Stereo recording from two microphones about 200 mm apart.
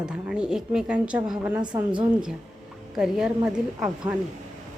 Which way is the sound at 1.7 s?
20° right (ahead or behind).